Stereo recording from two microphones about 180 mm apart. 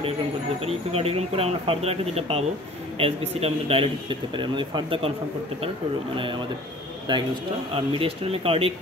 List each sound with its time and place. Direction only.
0.6 s speech: 35° right (ahead or behind)
7.1 s a man's voice: 25° right (ahead or behind)